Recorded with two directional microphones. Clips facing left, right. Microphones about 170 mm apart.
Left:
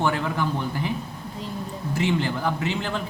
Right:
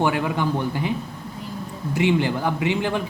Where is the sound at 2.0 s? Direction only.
15° right (ahead or behind).